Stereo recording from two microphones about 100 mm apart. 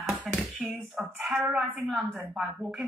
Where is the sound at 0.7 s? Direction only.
Centre (ahead or behind).